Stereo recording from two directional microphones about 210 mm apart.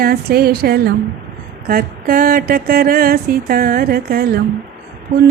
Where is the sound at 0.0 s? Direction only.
45° right (ahead or behind).